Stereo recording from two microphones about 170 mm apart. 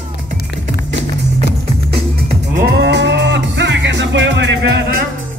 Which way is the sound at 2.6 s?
90° right.